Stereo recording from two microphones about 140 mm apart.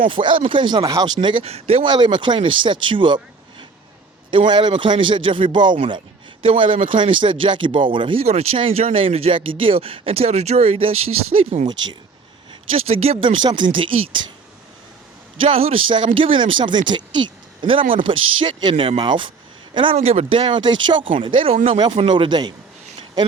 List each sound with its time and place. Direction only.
0.1 s speech: 35° right (ahead or behind)
4.3 s speech: 35° right (ahead or behind)
12.7 s speech: 45° right (ahead or behind)
15.4 s speech: 40° right (ahead or behind)